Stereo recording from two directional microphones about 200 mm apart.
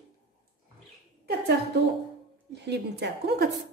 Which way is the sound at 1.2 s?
50° right (ahead or behind).